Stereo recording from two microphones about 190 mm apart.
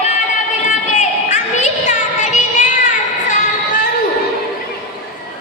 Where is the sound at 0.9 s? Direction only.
40° left (ahead or behind).